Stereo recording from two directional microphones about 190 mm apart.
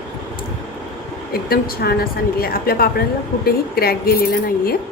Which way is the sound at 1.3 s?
50° left (ahead or behind).